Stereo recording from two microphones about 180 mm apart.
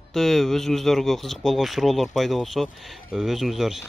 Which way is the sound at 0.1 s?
Centre (ahead or behind).